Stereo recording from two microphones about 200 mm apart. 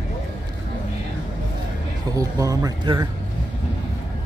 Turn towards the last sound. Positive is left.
turn(degrees=-20)  # may be behind; listen again after turning